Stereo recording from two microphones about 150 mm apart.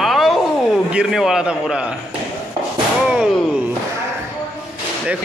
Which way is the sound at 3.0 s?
5° right (ahead or behind).